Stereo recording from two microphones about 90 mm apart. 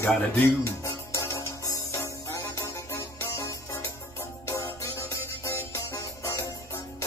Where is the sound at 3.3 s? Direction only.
30° left (ahead or behind).